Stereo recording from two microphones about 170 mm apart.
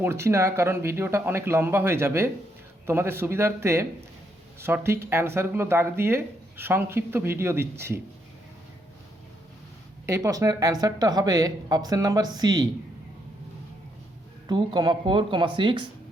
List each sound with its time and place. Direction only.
0.0 s speech: 15° right (ahead or behind)
10.1 s speech: 20° right (ahead or behind)
14.4 s speech: 25° right (ahead or behind)